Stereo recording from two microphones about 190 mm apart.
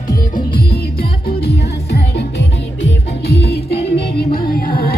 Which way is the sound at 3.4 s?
60° left (ahead or behind).